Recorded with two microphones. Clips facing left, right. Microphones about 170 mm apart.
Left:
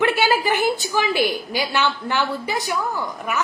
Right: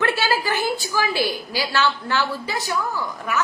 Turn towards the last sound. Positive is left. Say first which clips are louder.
# left 1 dB
turn(degrees=20)  # may be behind; listen again after turning